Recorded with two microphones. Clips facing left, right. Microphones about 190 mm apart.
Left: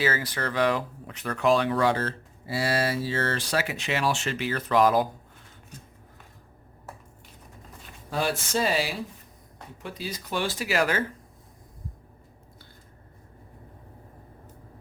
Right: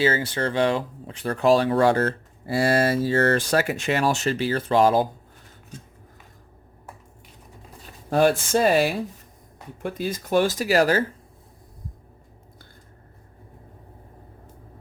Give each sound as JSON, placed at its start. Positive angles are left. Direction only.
{"t": 0.0, "sound": "speech", "side_deg": -25}
{"t": 8.1, "sound": "speech", "side_deg": -50}